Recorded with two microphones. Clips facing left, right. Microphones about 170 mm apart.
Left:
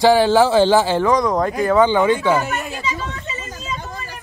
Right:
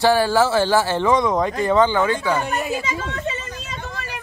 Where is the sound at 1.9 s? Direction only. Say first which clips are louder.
Left 4 dB; 15° left (ahead or behind).